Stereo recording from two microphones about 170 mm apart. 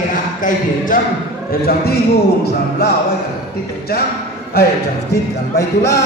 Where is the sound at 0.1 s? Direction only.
50° left (ahead or behind).